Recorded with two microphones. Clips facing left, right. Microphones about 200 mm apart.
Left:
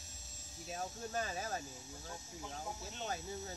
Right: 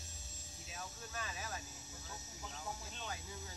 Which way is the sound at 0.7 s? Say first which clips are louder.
Left 8 dB; 40° left (ahead or behind).